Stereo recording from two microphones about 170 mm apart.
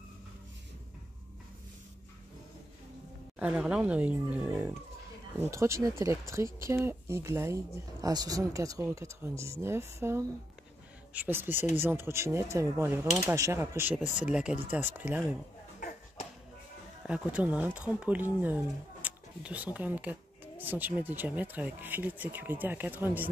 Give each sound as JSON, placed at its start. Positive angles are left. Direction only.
{"t": 3.3, "sound": "speech", "side_deg": -5}
{"t": 17.0, "sound": "speech", "side_deg": -5}